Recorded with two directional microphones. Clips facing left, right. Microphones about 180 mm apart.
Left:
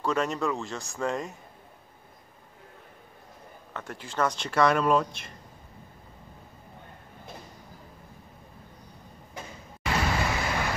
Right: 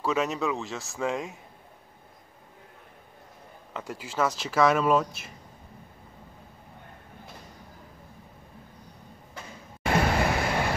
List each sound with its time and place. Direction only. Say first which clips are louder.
0.0 s speech: even; 5° right (ahead or behind)
3.7 s speech: right 1 dB; 10° right (ahead or behind)
9.8 s vehicle: right 4 dB; 55° right (ahead or behind)